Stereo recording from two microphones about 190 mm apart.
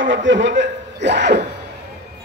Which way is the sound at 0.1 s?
75° right (ahead or behind).